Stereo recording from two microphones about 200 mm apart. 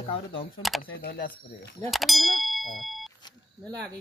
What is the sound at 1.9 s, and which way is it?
Speech, centre (ahead or behind).